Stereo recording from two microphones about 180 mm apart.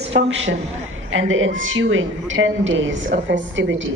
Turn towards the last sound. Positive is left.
turn(degrees=-90)